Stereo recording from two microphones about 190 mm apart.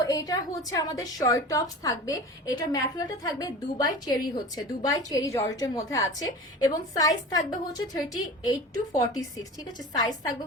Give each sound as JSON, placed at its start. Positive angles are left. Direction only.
{"t": 0.0, "sound": "a woman's voice", "side_deg": 20}